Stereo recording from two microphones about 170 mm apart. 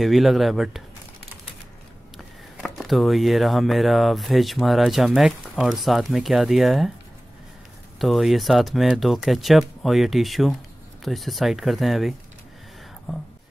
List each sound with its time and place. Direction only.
0.0 s speech: centre (ahead or behind)
2.1 s speech: centre (ahead or behind)
8.0 s speech: centre (ahead or behind)